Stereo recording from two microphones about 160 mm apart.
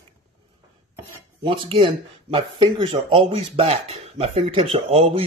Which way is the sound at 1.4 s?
30° right (ahead or behind).